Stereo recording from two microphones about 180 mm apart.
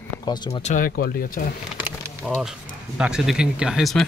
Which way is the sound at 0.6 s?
50° left (ahead or behind).